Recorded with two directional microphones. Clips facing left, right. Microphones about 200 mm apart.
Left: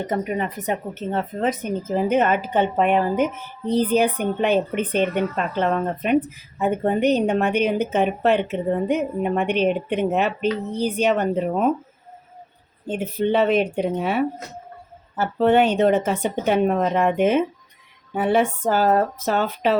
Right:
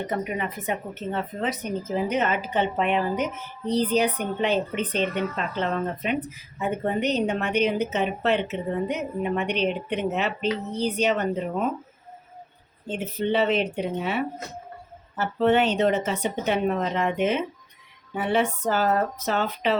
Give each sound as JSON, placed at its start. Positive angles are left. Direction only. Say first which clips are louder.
{"t": 0.1, "sound": "speech", "louder": "left 4 dB", "side_deg": 40}
{"t": 12.9, "sound": "speech", "louder": "left 4 dB", "side_deg": 50}